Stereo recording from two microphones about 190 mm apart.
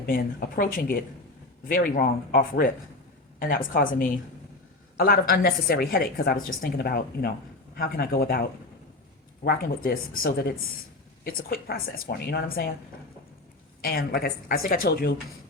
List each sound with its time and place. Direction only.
0.0 s a woman's voice: 50° left (ahead or behind)
13.8 s a woman's voice: 55° left (ahead or behind)